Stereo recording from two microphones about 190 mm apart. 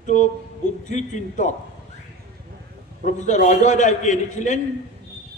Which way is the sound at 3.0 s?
40° left (ahead or behind).